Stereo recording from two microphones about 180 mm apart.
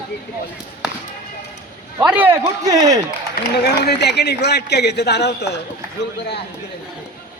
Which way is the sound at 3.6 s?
65° left (ahead or behind).